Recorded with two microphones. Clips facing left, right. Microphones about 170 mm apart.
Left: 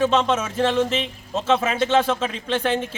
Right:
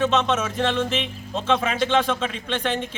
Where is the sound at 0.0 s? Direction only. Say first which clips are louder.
Left 2 dB; 10° left (ahead or behind).